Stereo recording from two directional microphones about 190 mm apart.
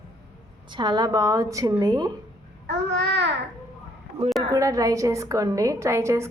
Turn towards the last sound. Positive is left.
turn(degrees=-15)  # may be behind; listen again after turning